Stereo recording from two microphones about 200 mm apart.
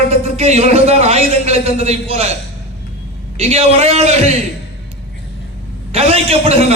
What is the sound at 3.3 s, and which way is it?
Speech, 30° right (ahead or behind).